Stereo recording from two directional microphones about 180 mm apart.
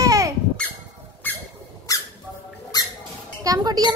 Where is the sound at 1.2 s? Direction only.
10° left (ahead or behind).